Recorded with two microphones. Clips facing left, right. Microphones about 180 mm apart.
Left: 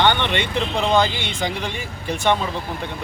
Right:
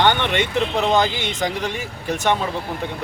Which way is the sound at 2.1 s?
5° right (ahead or behind).